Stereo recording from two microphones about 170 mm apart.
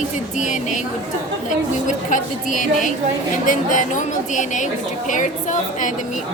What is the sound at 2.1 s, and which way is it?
A woman's voice, 50° left (ahead or behind).